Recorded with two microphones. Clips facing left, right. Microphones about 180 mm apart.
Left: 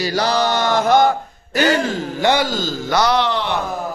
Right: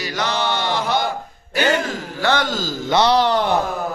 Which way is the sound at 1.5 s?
40° left (ahead or behind).